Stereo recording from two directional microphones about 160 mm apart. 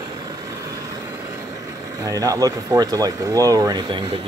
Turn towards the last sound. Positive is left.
turn(degrees=-30)  # may be behind; listen again after turning